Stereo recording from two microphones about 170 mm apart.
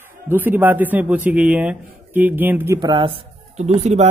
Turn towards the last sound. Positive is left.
turn(degrees=-40)  # may be behind; listen again after turning